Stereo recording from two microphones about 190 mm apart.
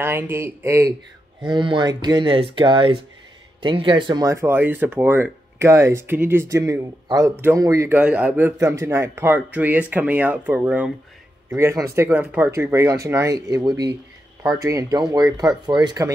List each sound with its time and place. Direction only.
0.0 s speech: 15° right (ahead or behind)
1.4 s speech: 25° right (ahead or behind)